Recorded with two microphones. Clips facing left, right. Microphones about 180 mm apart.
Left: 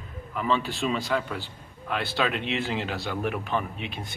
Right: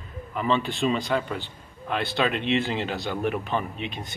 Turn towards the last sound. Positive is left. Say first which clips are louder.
# right 2 dB
turn(degrees=0)  # may be behind; listen again after turning